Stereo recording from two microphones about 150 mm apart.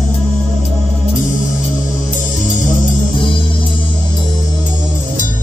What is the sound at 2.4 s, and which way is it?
Music, 55° left (ahead or behind).